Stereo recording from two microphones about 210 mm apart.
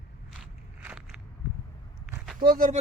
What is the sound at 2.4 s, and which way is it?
Speech, 45° right (ahead or behind).